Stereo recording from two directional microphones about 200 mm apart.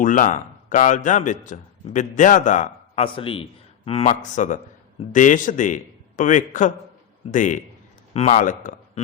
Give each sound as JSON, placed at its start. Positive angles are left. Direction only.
{"t": 0.0, "sound": "a man's voice", "side_deg": 40}